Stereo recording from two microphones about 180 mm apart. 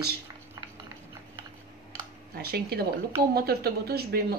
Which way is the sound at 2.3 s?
60° right (ahead or behind).